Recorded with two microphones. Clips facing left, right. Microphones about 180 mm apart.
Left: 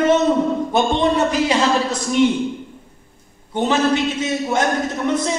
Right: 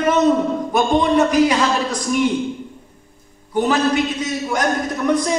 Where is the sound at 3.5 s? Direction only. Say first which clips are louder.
Right 1 dB; 25° left (ahead or behind).